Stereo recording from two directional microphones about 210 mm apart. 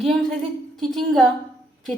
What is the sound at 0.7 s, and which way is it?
Speech, centre (ahead or behind).